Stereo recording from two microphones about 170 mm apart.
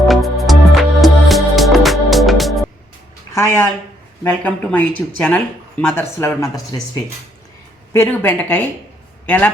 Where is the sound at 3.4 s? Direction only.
15° left (ahead or behind).